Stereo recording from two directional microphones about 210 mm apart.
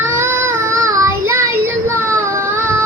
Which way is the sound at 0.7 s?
15° right (ahead or behind).